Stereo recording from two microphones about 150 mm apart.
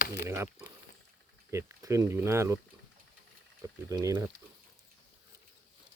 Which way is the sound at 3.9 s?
25° right (ahead or behind).